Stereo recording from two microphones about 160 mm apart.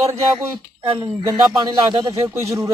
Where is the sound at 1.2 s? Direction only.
20° right (ahead or behind).